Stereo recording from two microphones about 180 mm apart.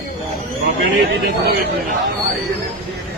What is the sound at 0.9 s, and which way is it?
Speech, 60° right (ahead or behind).